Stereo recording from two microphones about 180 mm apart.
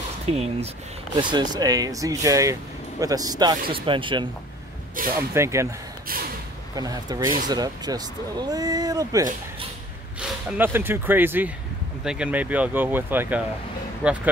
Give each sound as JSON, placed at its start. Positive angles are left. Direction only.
{"t": 0.3, "sound": "speech", "side_deg": -35}
{"t": 1.1, "sound": "speech", "side_deg": -25}
{"t": 5.0, "sound": "speech", "side_deg": -50}
{"t": 5.3, "sound": "speech", "side_deg": -15}
{"t": 6.1, "sound": "speech", "side_deg": -55}
{"t": 6.7, "sound": "speech", "side_deg": -20}